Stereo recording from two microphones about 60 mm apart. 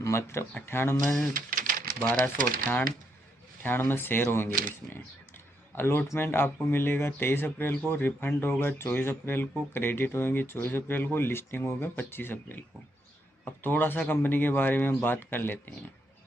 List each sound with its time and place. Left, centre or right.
0.0 s speech: left
2.0 s speech: left